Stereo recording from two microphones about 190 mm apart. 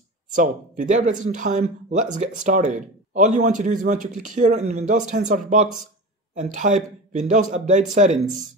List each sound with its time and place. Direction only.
0.3 s speech: 45° right (ahead or behind)